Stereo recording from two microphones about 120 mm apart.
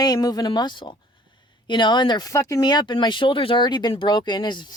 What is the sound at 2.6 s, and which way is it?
Speech, 35° left (ahead or behind).